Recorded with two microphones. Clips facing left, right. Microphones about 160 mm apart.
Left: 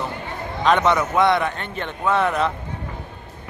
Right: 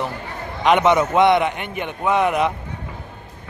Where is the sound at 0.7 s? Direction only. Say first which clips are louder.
Right 3 dB; 15° right (ahead or behind).